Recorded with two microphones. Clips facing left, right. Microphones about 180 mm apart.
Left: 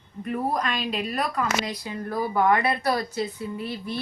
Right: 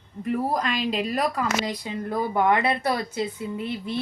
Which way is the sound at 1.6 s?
20° right (ahead or behind).